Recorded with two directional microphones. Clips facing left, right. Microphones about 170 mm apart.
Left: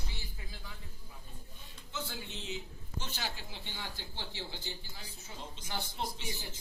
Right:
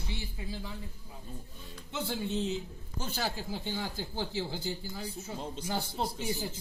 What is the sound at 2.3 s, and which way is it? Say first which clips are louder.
A man's voice: right 10 dB; 40° right (ahead or behind).